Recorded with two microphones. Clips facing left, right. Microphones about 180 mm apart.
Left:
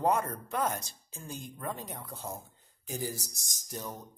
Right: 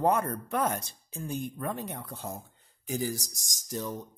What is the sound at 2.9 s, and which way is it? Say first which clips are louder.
Speech: right 5 dB; 90° right.